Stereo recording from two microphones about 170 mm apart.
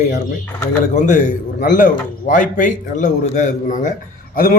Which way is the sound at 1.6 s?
50° left (ahead or behind).